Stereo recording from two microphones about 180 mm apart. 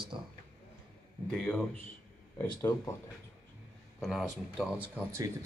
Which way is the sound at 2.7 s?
25° left (ahead or behind).